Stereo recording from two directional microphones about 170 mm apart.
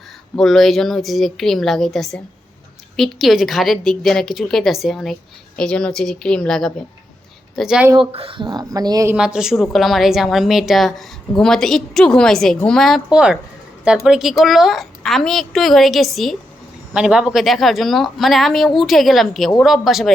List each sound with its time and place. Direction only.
0.3 s a woman's voice: centre (ahead or behind)
7.9 s speech: 30° right (ahead or behind)
9.1 s a woman's voice: 5° right (ahead or behind)